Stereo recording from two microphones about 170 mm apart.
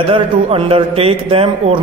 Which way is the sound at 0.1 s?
35° right (ahead or behind).